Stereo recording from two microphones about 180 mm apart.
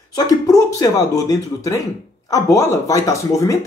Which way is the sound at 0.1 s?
20° left (ahead or behind).